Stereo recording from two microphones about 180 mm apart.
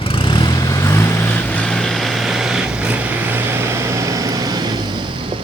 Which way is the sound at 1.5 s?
5° left (ahead or behind).